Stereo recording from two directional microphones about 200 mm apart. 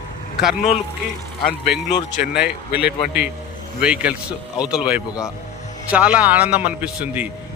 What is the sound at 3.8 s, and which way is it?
A man's voice, 5° right (ahead or behind).